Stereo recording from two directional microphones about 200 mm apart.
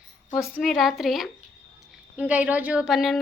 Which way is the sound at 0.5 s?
Centre (ahead or behind).